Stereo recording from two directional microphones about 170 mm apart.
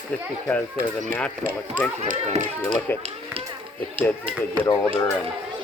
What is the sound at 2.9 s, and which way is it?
Speech, 10° left (ahead or behind).